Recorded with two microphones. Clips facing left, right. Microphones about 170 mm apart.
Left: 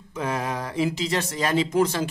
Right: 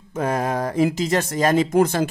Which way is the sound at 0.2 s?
45° right (ahead or behind).